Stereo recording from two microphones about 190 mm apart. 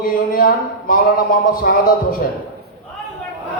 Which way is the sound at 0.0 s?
50° left (ahead or behind).